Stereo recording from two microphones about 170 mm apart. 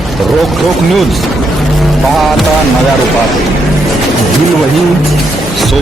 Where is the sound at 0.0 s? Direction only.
Centre (ahead or behind).